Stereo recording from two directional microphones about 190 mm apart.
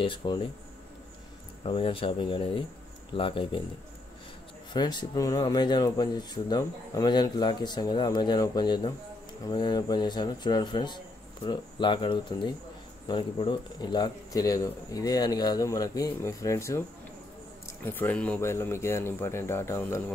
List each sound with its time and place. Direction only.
0.0 s speech: 25° left (ahead or behind)
1.6 s speech: 30° left (ahead or behind)
4.7 s speech: 20° left (ahead or behind)
17.8 s speech: 10° left (ahead or behind)